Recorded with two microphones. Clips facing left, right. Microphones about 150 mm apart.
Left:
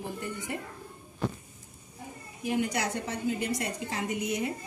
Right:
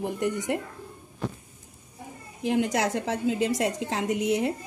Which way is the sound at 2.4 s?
90° right.